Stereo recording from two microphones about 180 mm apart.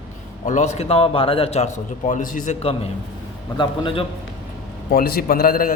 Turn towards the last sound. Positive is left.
turn(degrees=55)  # may be behind; listen again after turning